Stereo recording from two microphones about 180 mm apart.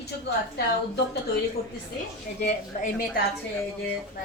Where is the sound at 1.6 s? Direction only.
60° left (ahead or behind).